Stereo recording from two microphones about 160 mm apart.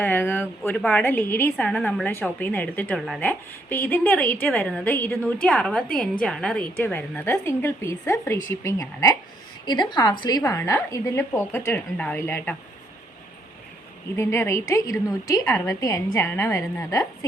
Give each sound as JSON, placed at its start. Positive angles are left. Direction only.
{"t": 0.0, "sound": "a woman's voice", "side_deg": 10}
{"t": 10.6, "sound": "a woman's voice", "side_deg": 15}
{"t": 14.2, "sound": "a woman's voice", "side_deg": 15}